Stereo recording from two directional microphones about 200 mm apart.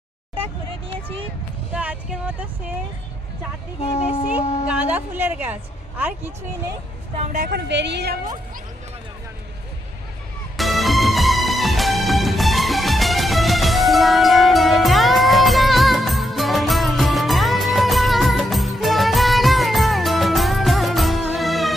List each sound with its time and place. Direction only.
1.7 s speech: 5° right (ahead or behind)
3.8 s speech: 30° left (ahead or behind)
4.7 s speech: 5° right (ahead or behind)
7.3 s speech: 55° right (ahead or behind)
10.6 s music: centre (ahead or behind)